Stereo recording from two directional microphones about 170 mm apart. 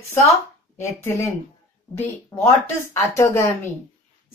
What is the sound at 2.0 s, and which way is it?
A woman's voice, 15° left (ahead or behind).